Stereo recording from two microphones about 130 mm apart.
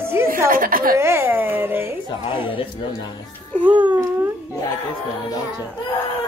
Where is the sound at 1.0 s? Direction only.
20° right (ahead or behind).